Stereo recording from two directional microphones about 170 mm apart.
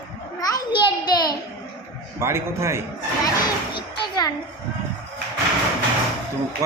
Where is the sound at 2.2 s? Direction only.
15° right (ahead or behind).